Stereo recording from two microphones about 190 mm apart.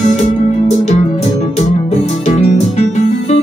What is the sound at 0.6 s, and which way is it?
Music, 35° left (ahead or behind).